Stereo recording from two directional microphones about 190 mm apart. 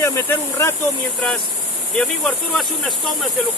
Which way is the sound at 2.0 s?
5° left (ahead or behind).